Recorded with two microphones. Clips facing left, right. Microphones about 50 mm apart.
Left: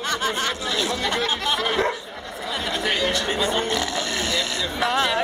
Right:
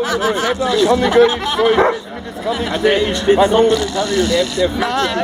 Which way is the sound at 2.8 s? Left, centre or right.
Right.